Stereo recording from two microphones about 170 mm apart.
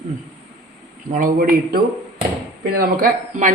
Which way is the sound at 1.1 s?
55° right (ahead or behind).